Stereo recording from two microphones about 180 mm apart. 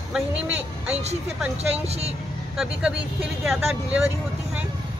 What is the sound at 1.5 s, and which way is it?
Speech, 35° right (ahead or behind).